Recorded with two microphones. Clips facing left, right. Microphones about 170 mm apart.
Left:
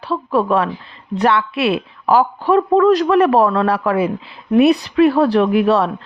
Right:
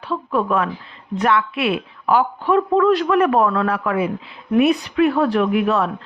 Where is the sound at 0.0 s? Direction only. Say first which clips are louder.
Left 3 dB; 35° left (ahead or behind).